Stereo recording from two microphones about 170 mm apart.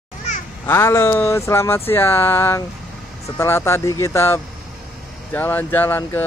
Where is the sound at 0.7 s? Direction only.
15° left (ahead or behind).